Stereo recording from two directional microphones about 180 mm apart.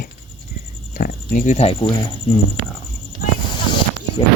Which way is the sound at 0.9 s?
50° left (ahead or behind).